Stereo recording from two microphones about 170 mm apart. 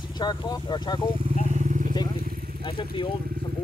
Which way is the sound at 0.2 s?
25° left (ahead or behind).